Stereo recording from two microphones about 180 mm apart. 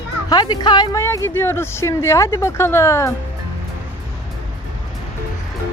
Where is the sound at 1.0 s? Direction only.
15° left (ahead or behind).